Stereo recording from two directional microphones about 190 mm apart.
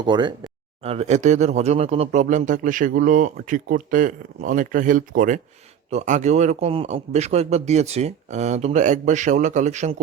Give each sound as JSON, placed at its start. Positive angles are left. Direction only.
{"t": 0.0, "sound": "a man's voice", "side_deg": -25}